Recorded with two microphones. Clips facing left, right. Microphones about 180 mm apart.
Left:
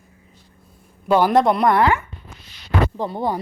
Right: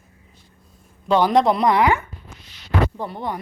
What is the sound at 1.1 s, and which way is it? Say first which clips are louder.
Speech: left 1 dB; 5° left (ahead or behind).